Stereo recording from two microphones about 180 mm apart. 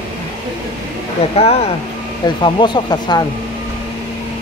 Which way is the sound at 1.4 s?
35° left (ahead or behind).